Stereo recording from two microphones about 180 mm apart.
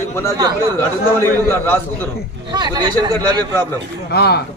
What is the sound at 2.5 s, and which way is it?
Speech, 25° right (ahead or behind).